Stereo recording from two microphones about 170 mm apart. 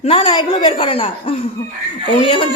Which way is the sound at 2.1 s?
35° left (ahead or behind).